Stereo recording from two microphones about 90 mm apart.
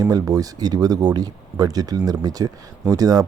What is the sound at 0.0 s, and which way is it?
Speech, 40° right (ahead or behind).